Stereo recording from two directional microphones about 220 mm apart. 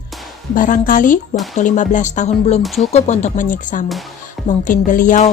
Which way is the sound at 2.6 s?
Centre (ahead or behind).